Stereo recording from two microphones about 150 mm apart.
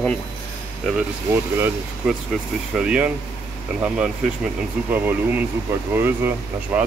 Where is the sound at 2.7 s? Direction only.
10° right (ahead or behind).